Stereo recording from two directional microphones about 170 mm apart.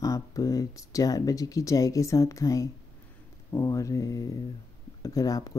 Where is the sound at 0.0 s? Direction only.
20° left (ahead or behind).